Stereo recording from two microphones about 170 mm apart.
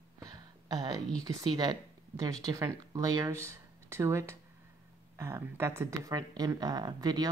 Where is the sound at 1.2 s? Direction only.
20° right (ahead or behind).